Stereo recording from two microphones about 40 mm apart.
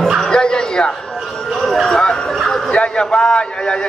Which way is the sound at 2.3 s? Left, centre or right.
Centre.